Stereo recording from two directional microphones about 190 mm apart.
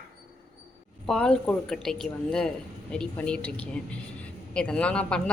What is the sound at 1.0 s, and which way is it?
A woman's voice, 5° left (ahead or behind).